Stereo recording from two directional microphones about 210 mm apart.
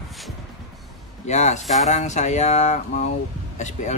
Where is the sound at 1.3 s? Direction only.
35° left (ahead or behind).